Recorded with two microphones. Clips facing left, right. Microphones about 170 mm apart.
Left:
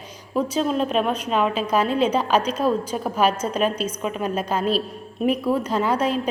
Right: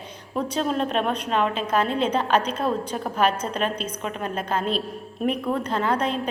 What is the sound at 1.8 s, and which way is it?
Speech, 30° right (ahead or behind).